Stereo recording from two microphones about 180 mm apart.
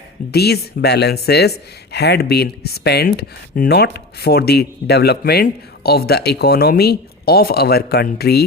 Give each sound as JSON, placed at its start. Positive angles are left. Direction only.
{"t": 0.3, "sound": "speech", "side_deg": 65}